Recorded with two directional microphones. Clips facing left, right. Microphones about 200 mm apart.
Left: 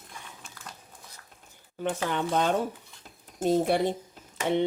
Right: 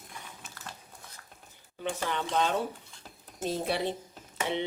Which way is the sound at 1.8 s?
50° left (ahead or behind).